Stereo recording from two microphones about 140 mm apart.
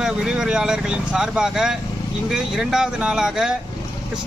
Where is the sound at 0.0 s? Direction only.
5° right (ahead or behind).